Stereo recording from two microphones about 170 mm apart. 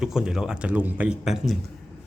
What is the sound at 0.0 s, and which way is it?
A man's voice, 5° right (ahead or behind).